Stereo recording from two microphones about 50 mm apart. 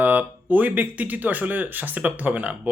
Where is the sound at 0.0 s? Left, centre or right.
Right.